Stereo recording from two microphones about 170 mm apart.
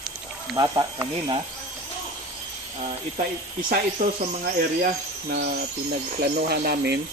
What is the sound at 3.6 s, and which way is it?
Speech, 60° right (ahead or behind).